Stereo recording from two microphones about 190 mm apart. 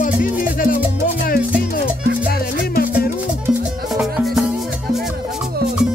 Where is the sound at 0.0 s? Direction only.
45° left (ahead or behind).